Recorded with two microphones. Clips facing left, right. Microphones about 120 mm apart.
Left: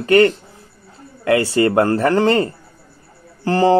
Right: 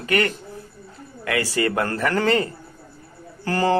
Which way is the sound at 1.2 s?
30° left (ahead or behind).